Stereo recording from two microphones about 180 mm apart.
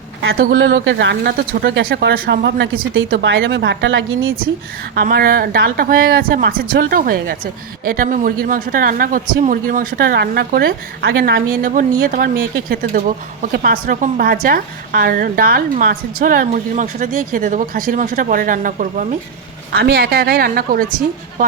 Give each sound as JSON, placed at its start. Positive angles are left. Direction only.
{"t": 0.3, "sound": "a woman's voice", "side_deg": -60}
{"t": 4.9, "sound": "speech", "side_deg": -55}
{"t": 11.7, "sound": "speech", "side_deg": -50}
{"t": 19.7, "sound": "speech", "side_deg": -65}